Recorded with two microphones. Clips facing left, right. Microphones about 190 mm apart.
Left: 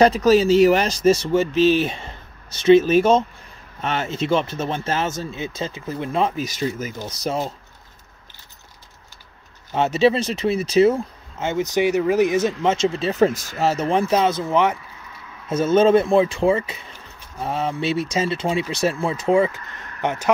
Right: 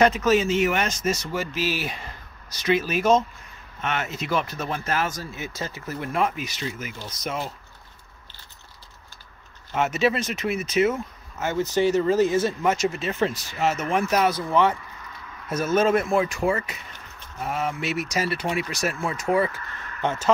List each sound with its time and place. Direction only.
0.0 s speech: 35° left (ahead or behind)
6.4 s speech: 40° left (ahead or behind)
9.7 s speech: 35° left (ahead or behind); by 12.5 s 15° left (ahead or behind)
12.6 s speech: 30° left (ahead or behind)